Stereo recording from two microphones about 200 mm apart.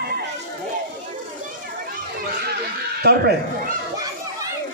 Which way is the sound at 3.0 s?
50° right (ahead or behind).